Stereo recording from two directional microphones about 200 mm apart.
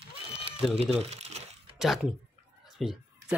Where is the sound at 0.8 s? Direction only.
30° right (ahead or behind).